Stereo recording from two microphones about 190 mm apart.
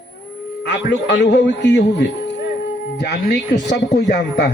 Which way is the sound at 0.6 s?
65° left (ahead or behind).